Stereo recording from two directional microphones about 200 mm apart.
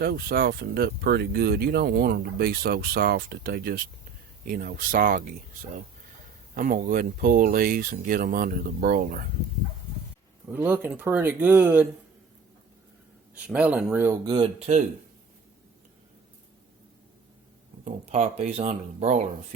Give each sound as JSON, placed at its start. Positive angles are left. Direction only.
{"t": 0.0, "sound": "speech", "side_deg": -50}
{"t": 6.5, "sound": "speech", "side_deg": -45}
{"t": 10.5, "sound": "speech", "side_deg": -10}
{"t": 13.3, "sound": "speech", "side_deg": -5}
{"t": 14.3, "sound": "speech", "side_deg": -30}
{"t": 17.8, "sound": "speech", "side_deg": -35}